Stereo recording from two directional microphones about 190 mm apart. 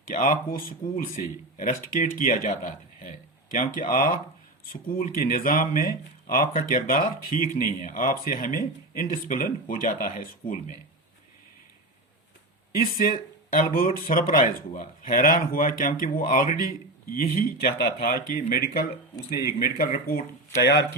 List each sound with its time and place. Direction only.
0.1 s speech: 45° left (ahead or behind)
13.5 s speech: 45° left (ahead or behind); by 20.8 s 60° left (ahead or behind)